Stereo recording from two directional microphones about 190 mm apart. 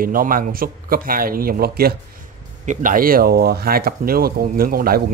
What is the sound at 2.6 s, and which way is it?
Speech, 45° right (ahead or behind).